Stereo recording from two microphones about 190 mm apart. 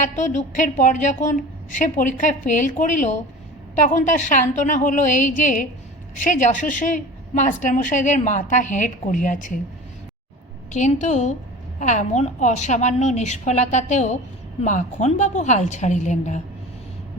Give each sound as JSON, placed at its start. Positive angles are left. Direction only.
{"t": 0.0, "sound": "a woman's voice", "side_deg": 40}
{"t": 10.7, "sound": "a woman's voice", "side_deg": 40}